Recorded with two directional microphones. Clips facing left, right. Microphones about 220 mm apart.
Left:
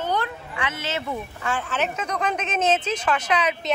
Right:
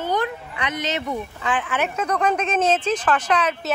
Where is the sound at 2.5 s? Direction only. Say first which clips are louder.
Right 3 dB; 5° left (ahead or behind).